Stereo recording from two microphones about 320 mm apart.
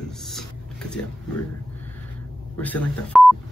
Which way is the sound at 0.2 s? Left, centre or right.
Centre.